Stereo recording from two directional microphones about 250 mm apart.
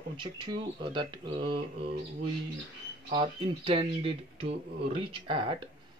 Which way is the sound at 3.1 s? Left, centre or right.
Right.